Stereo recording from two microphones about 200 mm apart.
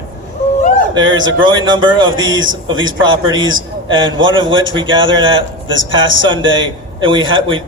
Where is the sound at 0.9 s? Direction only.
20° right (ahead or behind).